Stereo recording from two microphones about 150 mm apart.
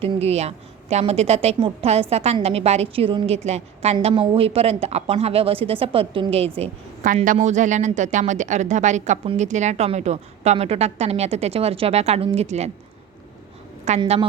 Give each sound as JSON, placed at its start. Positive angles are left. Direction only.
{"t": 0.0, "sound": "a woman's voice", "side_deg": -40}
{"t": 13.9, "sound": "a woman's voice", "side_deg": -50}